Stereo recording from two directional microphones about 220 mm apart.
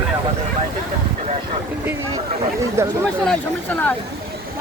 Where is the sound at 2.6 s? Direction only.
15° right (ahead or behind).